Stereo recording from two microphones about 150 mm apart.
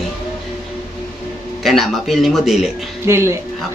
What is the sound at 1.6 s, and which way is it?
Speech, centre (ahead or behind).